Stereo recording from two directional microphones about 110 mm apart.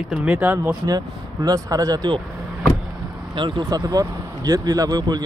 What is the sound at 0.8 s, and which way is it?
Speech, 35° right (ahead or behind).